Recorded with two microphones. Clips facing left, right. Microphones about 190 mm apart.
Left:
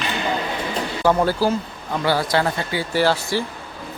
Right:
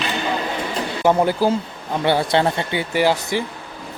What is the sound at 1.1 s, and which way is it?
A man's voice, 20° right (ahead or behind).